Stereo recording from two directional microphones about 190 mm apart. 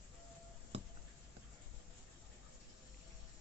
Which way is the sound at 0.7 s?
35° right (ahead or behind).